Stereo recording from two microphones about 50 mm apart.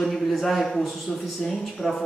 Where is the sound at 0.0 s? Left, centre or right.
Centre.